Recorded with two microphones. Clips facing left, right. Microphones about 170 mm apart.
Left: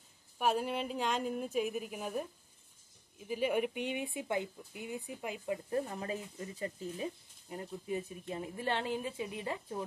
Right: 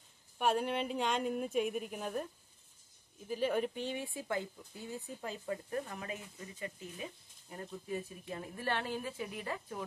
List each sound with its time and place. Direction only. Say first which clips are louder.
0.4 s a woman's voice: even; centre (ahead or behind)
3.3 s speech: left 1 dB; 10° left (ahead or behind)
5.7 s speech: left 4 dB; 25° left (ahead or behind)
7.4 s speech: left 3 dB; 20° left (ahead or behind)